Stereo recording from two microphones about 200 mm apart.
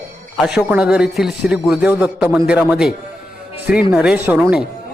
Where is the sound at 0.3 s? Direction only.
5° right (ahead or behind).